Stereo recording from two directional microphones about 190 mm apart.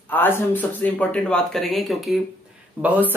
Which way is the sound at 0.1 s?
10° left (ahead or behind).